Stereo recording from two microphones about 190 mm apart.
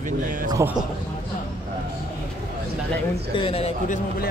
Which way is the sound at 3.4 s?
30° left (ahead or behind).